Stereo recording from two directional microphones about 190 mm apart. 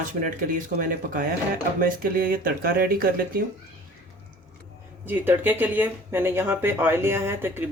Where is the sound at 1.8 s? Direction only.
50° right (ahead or behind).